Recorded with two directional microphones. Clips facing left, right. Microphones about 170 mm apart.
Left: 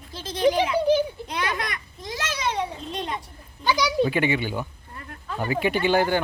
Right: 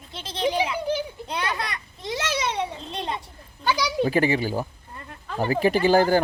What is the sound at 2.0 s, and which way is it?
Children playing, 25° right (ahead or behind).